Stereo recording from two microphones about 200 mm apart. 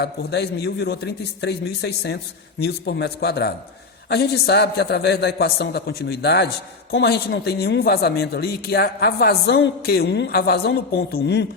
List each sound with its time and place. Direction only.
0.0 s a man's voice: 55° left (ahead or behind)